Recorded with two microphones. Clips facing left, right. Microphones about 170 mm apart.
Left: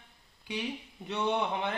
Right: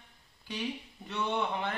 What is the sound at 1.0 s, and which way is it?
Speech, 20° left (ahead or behind).